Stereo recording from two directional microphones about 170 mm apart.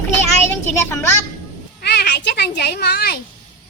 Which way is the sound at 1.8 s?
75° left (ahead or behind).